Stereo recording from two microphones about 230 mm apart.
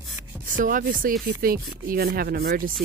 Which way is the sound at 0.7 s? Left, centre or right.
Right.